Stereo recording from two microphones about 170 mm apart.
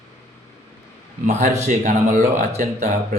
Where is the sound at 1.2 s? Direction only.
45° right (ahead or behind).